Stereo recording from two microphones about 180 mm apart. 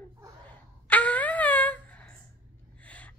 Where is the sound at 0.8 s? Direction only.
10° left (ahead or behind).